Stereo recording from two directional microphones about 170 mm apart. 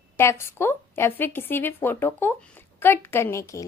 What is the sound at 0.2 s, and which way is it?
A woman's voice, 15° left (ahead or behind).